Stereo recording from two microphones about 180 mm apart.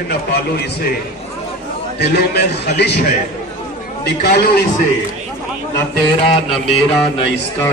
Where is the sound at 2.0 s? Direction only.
65° left (ahead or behind).